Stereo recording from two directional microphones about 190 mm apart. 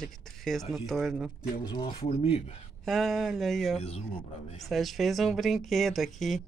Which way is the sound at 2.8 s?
Centre (ahead or behind).